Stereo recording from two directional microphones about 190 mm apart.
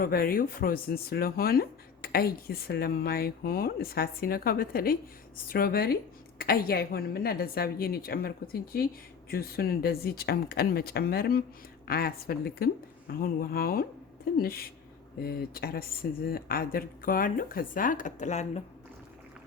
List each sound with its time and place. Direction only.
0.0 s speech: 50° left (ahead or behind)